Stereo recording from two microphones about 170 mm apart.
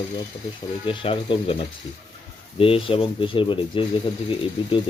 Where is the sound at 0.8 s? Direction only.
30° left (ahead or behind).